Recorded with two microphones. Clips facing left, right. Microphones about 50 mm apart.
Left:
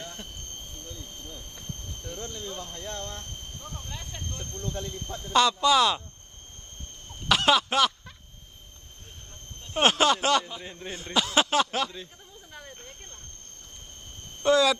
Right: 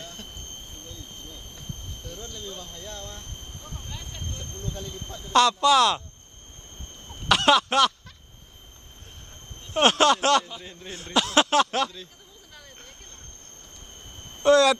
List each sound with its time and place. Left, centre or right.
0.0 s a sound: centre
2.1 s a sound: centre
3.9 s vehicle: centre
4.3 s speech: centre
5.3 s speech: centre
7.2 s a sound: centre
9.7 s speech: centre
11.0 s speech: centre
14.4 s speech: centre